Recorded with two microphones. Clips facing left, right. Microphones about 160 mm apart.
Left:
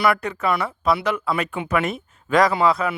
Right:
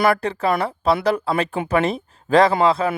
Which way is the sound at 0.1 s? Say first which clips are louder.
Right 2 dB; 30° right (ahead or behind).